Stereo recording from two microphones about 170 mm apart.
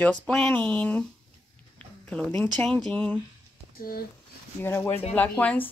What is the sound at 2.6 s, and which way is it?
Speech, 10° left (ahead or behind).